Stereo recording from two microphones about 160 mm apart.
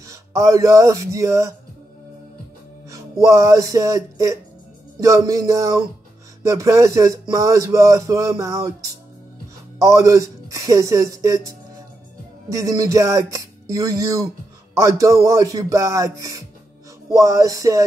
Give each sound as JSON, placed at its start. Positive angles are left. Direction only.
{"t": 0.1, "sound": "speech", "side_deg": -20}
{"t": 2.9, "sound": "speech", "side_deg": -20}
{"t": 9.8, "sound": "speech", "side_deg": -20}